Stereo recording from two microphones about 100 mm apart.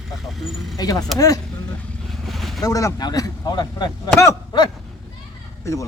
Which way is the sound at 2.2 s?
Centre (ahead or behind).